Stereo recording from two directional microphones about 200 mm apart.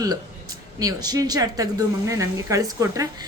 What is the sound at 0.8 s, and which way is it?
A woman's voice, 20° right (ahead or behind).